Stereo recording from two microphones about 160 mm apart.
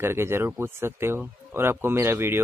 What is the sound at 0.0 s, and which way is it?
Speech, 15° right (ahead or behind).